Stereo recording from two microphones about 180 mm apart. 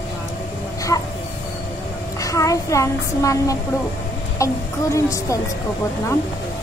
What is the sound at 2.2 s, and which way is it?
A woman's voice, 20° left (ahead or behind).